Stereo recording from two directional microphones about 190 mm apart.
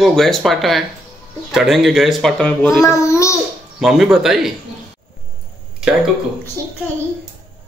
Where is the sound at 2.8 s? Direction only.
15° left (ahead or behind).